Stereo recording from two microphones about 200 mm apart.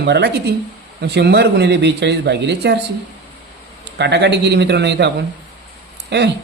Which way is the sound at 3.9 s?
60° right (ahead or behind).